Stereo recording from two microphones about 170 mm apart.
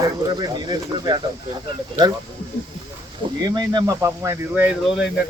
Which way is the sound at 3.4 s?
25° right (ahead or behind).